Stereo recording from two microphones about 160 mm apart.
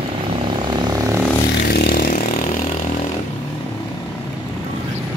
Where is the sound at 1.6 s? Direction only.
85° left.